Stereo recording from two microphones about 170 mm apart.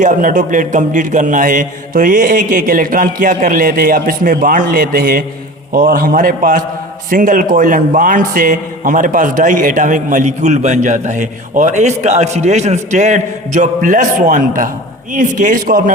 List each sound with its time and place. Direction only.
0.0 s a man's voice: 50° right (ahead or behind)